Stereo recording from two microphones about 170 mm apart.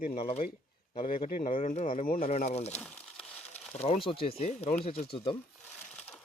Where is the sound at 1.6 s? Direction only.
40° left (ahead or behind).